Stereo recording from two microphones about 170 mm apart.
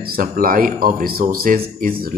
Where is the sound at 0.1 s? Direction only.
60° right (ahead or behind).